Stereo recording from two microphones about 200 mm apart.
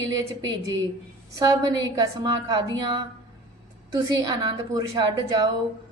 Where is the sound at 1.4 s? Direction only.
20° right (ahead or behind).